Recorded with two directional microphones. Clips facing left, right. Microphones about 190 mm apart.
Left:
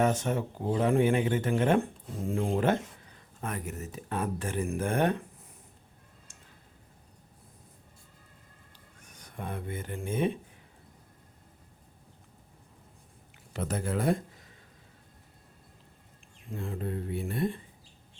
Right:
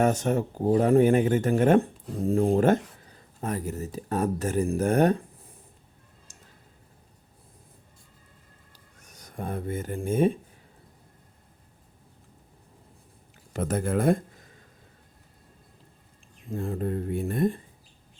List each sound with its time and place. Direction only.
0.0 s speech: 45° right (ahead or behind)
6.3 s tick-tock: 40° right (ahead or behind)
9.0 s speech: 40° right (ahead or behind)
13.5 s speech: 50° right (ahead or behind)
16.6 s speech: 40° right (ahead or behind)